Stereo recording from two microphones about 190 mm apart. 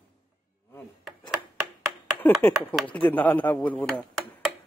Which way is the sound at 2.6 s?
5° left (ahead or behind).